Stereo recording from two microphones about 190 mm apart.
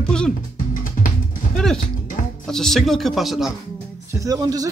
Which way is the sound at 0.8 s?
45° left (ahead or behind).